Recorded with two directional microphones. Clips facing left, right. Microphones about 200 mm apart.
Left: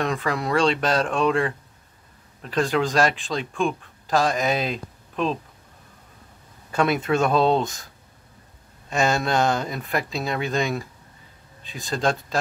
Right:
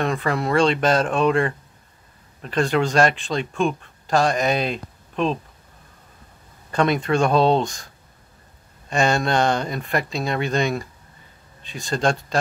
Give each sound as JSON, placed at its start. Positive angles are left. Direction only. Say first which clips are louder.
{"t": 0.0, "sound": "a man's voice", "louder": "right 2 dB", "side_deg": 0}
{"t": 6.7, "sound": "a man's voice", "louder": "right 1 dB", "side_deg": 5}
{"t": 8.9, "sound": "a man's voice", "louder": "right 2 dB", "side_deg": 0}